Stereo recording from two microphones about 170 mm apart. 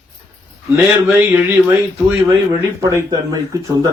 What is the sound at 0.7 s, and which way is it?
A man's voice, 15° right (ahead or behind).